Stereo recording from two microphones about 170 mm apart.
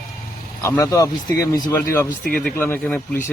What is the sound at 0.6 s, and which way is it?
Speech, 20° left (ahead or behind).